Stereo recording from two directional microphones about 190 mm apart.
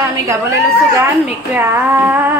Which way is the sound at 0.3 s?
15° right (ahead or behind).